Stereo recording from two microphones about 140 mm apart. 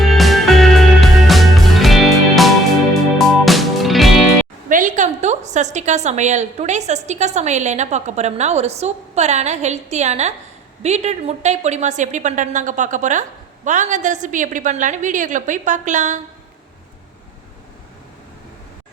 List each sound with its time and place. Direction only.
0.0 s music: centre (ahead or behind)
4.7 s a woman's voice: 65° right (ahead or behind)